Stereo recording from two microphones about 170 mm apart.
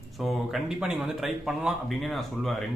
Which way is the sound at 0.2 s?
Centre (ahead or behind).